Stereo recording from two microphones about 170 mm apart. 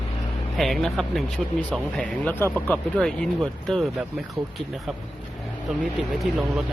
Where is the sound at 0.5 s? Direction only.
Centre (ahead or behind).